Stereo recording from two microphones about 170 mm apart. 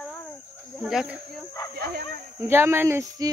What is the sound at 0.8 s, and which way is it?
Speech, 5° right (ahead or behind).